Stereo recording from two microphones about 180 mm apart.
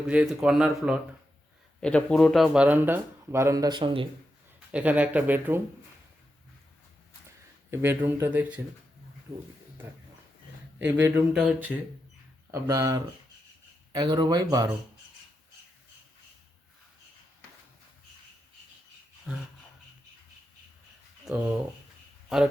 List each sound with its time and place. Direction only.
0.1 s speech: 5° right (ahead or behind); by 4.0 s 25° right (ahead or behind)
4.7 s speech: 10° right (ahead or behind)
7.7 s speech: 15° right (ahead or behind)
11.0 s speech: 5° right (ahead or behind)
12.5 s speech: 20° right (ahead or behind)
19.3 s speech: 5° right (ahead or behind)
21.3 s speech: 5° right (ahead or behind)